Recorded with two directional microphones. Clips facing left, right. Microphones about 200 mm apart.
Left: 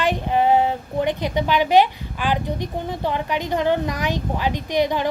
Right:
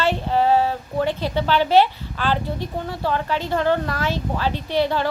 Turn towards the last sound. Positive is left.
turn(degrees=15)  # may be behind; listen again after turning